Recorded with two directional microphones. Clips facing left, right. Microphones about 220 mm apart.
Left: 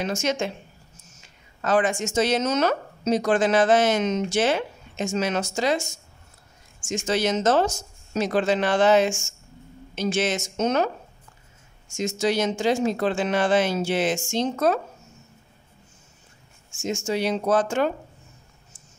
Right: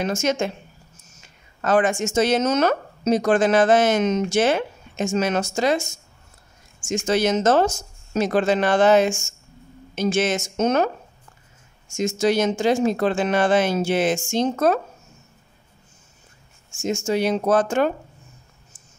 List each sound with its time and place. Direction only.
0.0 s a woman's voice: 50° right (ahead or behind)
1.6 s a woman's voice: 50° right (ahead or behind)
6.9 s a woman's voice: 50° right (ahead or behind)
12.2 s a woman's voice: 50° right (ahead or behind)
16.8 s a woman's voice: 45° right (ahead or behind)